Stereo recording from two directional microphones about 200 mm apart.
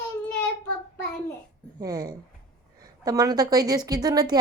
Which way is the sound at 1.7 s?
20° right (ahead or behind).